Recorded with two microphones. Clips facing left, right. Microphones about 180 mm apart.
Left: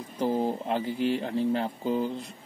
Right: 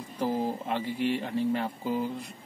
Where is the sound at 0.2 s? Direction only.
30° left (ahead or behind).